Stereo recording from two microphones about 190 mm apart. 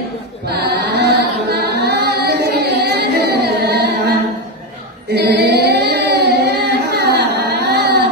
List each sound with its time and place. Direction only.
0.5 s singing: 55° right (ahead or behind)
5.1 s singing: 60° right (ahead or behind)